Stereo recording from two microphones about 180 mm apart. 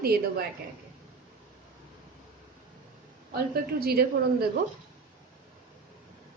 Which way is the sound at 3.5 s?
60° right (ahead or behind).